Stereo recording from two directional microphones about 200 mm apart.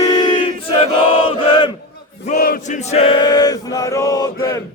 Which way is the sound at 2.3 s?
50° left (ahead or behind).